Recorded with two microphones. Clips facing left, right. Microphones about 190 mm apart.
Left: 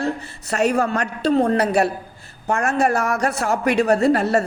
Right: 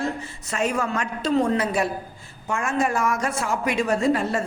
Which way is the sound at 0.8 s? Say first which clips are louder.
Left 5 dB; 60° left (ahead or behind).